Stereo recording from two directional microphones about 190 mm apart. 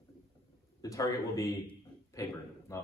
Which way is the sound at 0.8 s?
15° left (ahead or behind).